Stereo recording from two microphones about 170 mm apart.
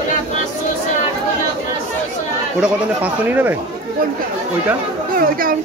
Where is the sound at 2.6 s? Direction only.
10° right (ahead or behind).